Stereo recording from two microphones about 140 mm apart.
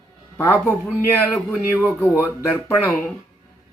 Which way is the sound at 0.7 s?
10° left (ahead or behind).